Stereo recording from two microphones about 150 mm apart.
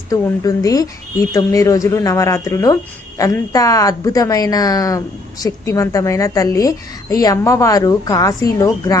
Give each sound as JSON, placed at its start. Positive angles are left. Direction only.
{"t": 0.1, "sound": "speech", "side_deg": 25}